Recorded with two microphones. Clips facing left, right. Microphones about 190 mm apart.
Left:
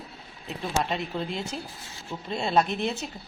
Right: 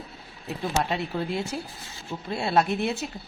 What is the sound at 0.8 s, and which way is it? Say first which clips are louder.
A woman's voice: right 1 dB; 10° right (ahead or behind).